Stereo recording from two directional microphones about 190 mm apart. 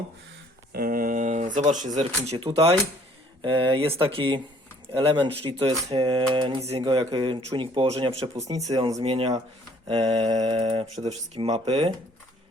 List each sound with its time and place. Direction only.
0.7 s speech: 50° right (ahead or behind); by 8.4 s 30° right (ahead or behind)
8.4 s speech: 20° right (ahead or behind)
9.0 s speech: 30° right (ahead or behind)